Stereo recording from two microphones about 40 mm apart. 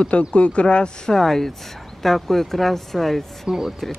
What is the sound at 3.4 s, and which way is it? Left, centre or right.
Speech, centre.